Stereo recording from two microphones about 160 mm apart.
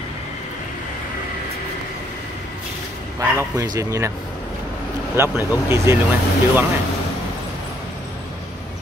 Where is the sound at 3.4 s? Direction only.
20° right (ahead or behind).